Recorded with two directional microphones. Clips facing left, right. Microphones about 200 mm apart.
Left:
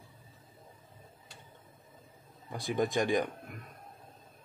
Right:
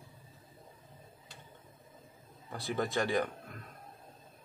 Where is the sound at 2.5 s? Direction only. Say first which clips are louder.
Left 3 dB; 15° left (ahead or behind).